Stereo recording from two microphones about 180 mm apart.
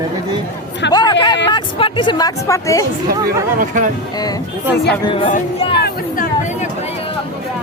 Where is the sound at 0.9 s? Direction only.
25° left (ahead or behind).